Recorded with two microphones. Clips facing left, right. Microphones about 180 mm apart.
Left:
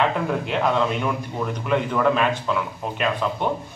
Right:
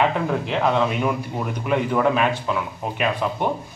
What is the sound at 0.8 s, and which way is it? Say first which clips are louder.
Speech: right 2 dB; 10° right (ahead or behind).